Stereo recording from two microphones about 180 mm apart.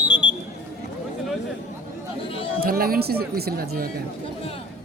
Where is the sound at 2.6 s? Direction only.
55° right (ahead or behind).